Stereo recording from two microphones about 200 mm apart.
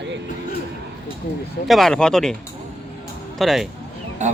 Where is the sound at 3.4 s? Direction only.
Centre (ahead or behind).